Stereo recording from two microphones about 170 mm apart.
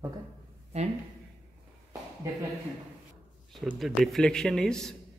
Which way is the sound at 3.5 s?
Centre (ahead or behind).